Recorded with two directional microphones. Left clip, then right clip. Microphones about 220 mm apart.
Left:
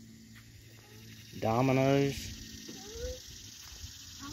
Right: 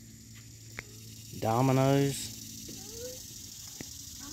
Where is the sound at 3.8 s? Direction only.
60° right (ahead or behind).